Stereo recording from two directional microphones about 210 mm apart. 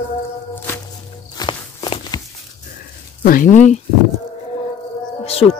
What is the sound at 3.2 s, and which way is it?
Speech, 40° left (ahead or behind).